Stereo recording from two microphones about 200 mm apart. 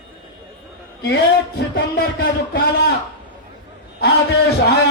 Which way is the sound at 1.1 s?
55° left (ahead or behind).